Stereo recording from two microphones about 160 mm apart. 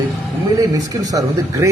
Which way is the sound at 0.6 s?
20° right (ahead or behind).